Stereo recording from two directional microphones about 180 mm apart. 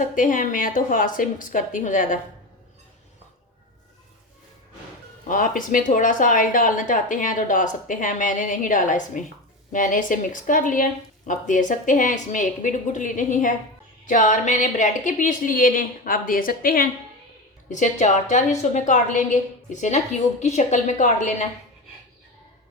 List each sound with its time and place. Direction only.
0.0 s speech: 50° left (ahead or behind)
5.3 s speech: 50° left (ahead or behind)
17.7 s a woman's voice: 45° left (ahead or behind)